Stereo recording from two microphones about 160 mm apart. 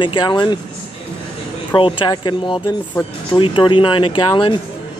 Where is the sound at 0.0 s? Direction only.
30° left (ahead or behind).